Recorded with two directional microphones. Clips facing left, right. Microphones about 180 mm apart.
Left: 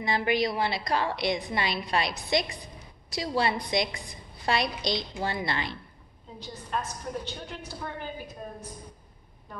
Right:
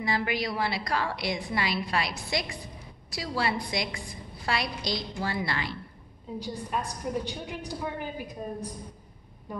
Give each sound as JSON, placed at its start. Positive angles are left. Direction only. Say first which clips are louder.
{"t": 0.0, "sound": "a woman's voice", "louder": "left 3 dB", "side_deg": 20}
{"t": 6.4, "sound": "a woman's voice", "louder": "even", "side_deg": -15}
{"t": 9.5, "sound": "a sound", "louder": "right 6 dB", "side_deg": -10}